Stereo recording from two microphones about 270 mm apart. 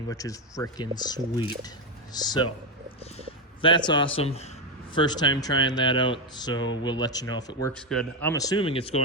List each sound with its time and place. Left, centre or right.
0.1 s speech: centre
7.7 s speech: centre; by 9.0 s left